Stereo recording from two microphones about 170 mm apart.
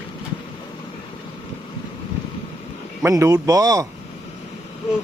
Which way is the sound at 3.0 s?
15° right (ahead or behind).